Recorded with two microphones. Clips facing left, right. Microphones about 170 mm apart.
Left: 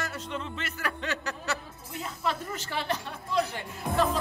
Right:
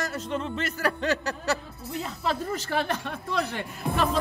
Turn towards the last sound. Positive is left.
turn(degrees=-75)  # may be behind; listen again after turning